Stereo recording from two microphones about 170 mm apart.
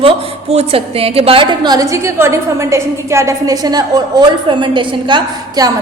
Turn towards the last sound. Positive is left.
turn(degrees=-25)  # may be behind; listen again after turning